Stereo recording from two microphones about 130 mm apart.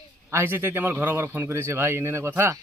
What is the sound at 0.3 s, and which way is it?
A man's voice, 20° right (ahead or behind).